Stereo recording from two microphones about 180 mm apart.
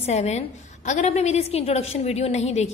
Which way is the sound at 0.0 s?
35° left (ahead or behind).